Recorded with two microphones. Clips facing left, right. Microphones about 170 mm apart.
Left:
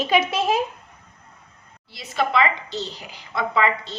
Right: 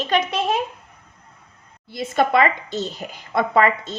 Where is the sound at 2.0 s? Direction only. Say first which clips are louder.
Right 4 dB; 50° right (ahead or behind).